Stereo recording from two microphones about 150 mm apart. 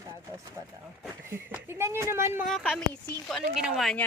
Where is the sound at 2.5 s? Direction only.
5° right (ahead or behind).